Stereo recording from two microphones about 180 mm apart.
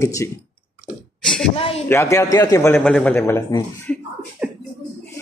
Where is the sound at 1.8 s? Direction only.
15° left (ahead or behind).